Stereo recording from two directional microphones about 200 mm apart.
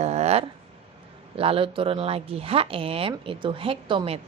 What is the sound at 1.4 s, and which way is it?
A woman's voice, 25° right (ahead or behind).